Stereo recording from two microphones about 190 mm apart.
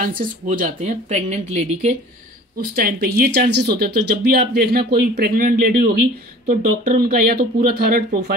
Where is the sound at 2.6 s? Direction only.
55° right (ahead or behind).